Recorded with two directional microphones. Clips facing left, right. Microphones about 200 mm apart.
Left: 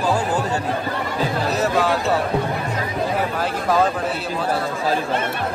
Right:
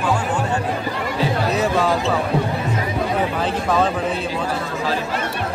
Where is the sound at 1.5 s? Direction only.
Centre (ahead or behind).